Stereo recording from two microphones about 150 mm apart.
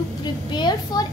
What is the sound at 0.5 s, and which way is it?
Speech, 25° left (ahead or behind).